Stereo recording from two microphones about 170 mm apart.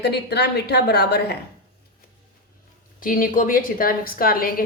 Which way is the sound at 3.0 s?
55° left (ahead or behind).